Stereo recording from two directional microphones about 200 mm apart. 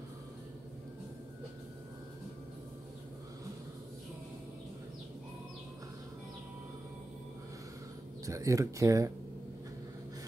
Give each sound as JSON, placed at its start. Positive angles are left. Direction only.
{"t": 8.3, "sound": "speech", "side_deg": -15}